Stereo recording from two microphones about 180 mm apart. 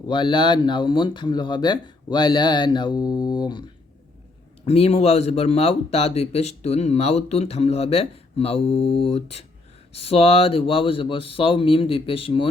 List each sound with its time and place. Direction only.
0.1 s speech: 25° left (ahead or behind)
4.6 s speech: 35° left (ahead or behind)